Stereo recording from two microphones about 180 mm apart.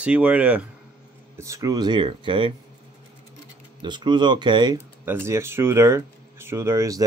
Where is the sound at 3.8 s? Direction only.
25° right (ahead or behind).